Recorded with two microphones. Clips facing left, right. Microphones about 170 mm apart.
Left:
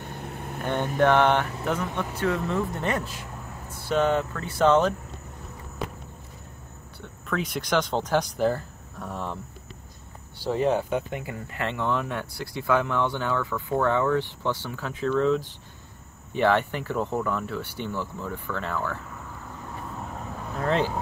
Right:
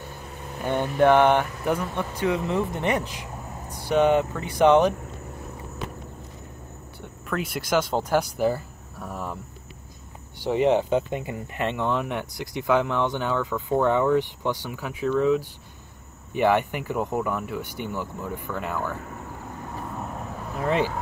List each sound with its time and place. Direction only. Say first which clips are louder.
0.2 s vehicle: right 1 dB; 55° left (ahead or behind)
0.9 s speech: right 3 dB; 10° right (ahead or behind)
7.0 s speech: even; 5° right (ahead or behind)
10.4 s speech: right 3 dB; 15° right (ahead or behind)
20.5 s speech: right 1 dB; 10° right (ahead or behind)